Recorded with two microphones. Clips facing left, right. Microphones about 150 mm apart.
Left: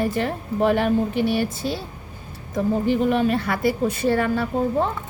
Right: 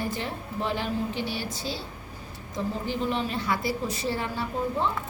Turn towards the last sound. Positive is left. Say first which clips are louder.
# left 7 dB
turn(degrees=60)  # may be behind; listen again after turning